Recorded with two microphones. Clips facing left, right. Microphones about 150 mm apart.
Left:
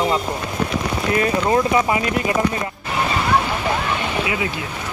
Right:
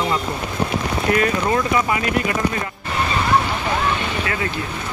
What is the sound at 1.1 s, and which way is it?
Speech, 25° left (ahead or behind).